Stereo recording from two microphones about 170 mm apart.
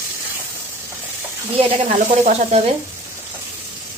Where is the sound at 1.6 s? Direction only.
40° right (ahead or behind).